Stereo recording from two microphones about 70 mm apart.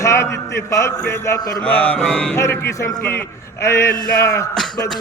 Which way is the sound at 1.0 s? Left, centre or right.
Left.